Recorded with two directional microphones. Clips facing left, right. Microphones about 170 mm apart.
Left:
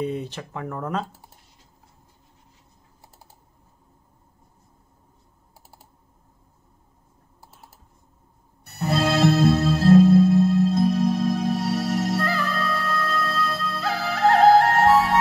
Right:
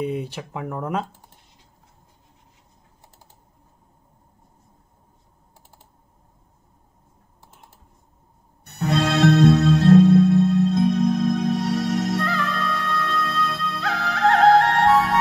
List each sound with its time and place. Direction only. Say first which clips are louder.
0.0 s speech: right 1 dB; 10° right (ahead or behind)
5.6 s typing: left 2 dB; 10° left (ahead or behind)
8.6 s music: right 1 dB; 5° left (ahead or behind)